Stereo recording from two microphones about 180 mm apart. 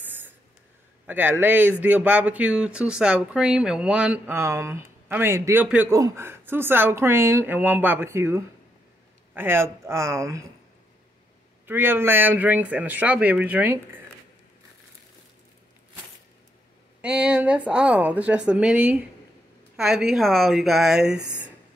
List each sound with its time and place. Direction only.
1.0 s speech: 10° right (ahead or behind)
11.6 s speech: 10° right (ahead or behind)
17.0 s speech: 5° right (ahead or behind)